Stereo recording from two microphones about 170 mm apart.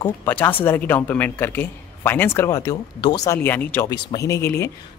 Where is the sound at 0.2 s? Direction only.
10° left (ahead or behind).